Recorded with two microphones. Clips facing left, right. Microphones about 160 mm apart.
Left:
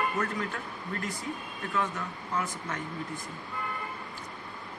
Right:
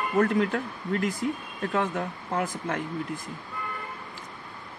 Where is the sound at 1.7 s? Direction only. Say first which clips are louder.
Right 4 dB; 55° right (ahead or behind).